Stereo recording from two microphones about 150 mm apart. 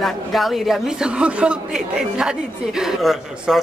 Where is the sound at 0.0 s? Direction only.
Centre (ahead or behind).